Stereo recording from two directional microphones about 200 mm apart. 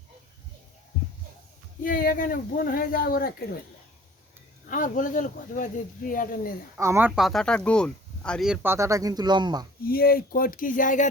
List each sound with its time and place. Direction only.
1.8 s speech: 45° left (ahead or behind)
4.7 s speech: 40° left (ahead or behind)
6.7 s speech: 15° right (ahead or behind)
7.2 s speech: centre (ahead or behind); by 9.6 s 20° right (ahead or behind)
9.8 s speech: 50° left (ahead or behind)